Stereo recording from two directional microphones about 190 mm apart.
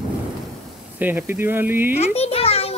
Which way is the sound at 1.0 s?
10° right (ahead or behind).